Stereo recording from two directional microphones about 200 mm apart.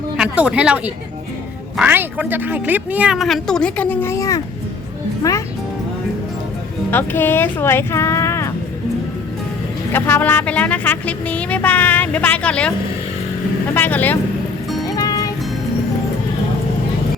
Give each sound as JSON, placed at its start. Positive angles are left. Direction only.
{"t": 0.2, "sound": "speech", "side_deg": -5}
{"t": 6.9, "sound": "speech", "side_deg": 10}
{"t": 9.9, "sound": "speech", "side_deg": 10}
{"t": 13.7, "sound": "speech", "side_deg": 10}
{"t": 14.8, "sound": "music", "side_deg": 20}